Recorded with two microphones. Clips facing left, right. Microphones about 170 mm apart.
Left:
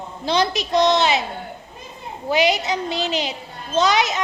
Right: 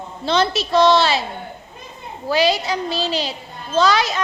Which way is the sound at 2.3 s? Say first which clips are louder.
Right 1 dB; 20° left (ahead or behind).